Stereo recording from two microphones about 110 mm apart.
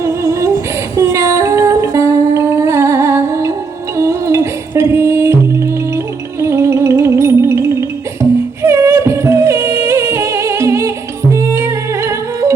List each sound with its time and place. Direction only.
0.0 s female singing: 30° right (ahead or behind)
0.9 s humming: 25° right (ahead or behind)
3.9 s music: 25° right (ahead or behind)
6.4 s music: 25° right (ahead or behind)